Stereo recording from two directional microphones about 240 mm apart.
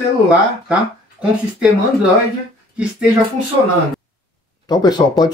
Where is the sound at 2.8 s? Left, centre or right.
Centre.